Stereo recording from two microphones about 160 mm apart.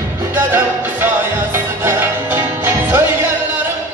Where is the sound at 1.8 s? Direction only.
15° right (ahead or behind).